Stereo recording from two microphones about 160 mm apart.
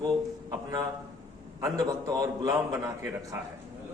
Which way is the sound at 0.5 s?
25° right (ahead or behind).